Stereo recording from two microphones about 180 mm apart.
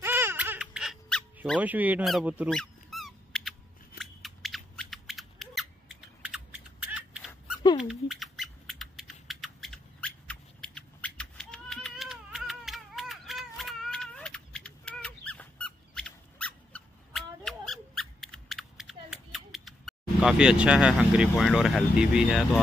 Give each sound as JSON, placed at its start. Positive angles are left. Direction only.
{"t": 0.0, "sound": "laughter", "side_deg": -10}
{"t": 1.6, "sound": "speech", "side_deg": -10}
{"t": 2.5, "sound": "squeak", "side_deg": 0}
{"t": 4.0, "sound": "a sound", "side_deg": 0}
{"t": 7.6, "sound": "rodents", "side_deg": 25}
{"t": 7.9, "sound": "a sound", "side_deg": 0}